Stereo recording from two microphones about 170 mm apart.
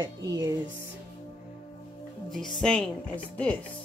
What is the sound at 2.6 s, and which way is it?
Speech, 5° left (ahead or behind).